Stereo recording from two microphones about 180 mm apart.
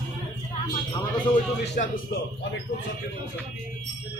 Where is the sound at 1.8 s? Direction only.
50° left (ahead or behind).